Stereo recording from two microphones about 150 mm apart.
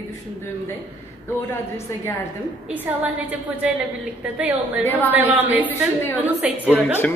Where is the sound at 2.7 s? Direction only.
10° right (ahead or behind).